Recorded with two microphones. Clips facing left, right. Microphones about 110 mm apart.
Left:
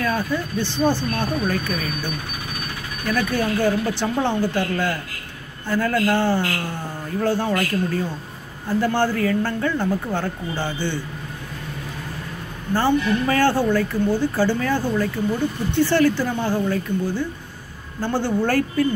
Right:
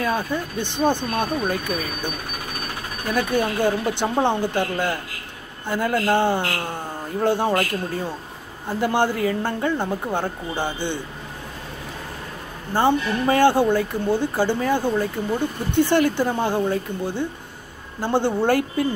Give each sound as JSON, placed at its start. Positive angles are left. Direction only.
{"t": 0.0, "sound": "speech", "side_deg": -20}
{"t": 3.1, "sound": "speech", "side_deg": -20}
{"t": 8.6, "sound": "speech", "side_deg": -20}
{"t": 12.7, "sound": "speech", "side_deg": -20}